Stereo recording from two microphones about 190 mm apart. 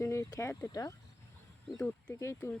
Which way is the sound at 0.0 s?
15° left (ahead or behind).